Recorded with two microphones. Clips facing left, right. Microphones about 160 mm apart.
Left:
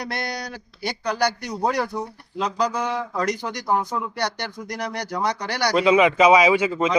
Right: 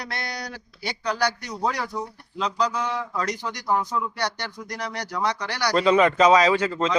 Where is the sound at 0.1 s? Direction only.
45° left (ahead or behind).